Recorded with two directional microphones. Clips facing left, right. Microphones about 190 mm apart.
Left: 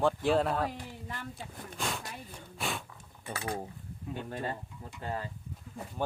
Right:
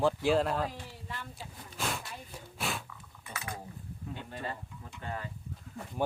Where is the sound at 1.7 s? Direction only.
Centre (ahead or behind).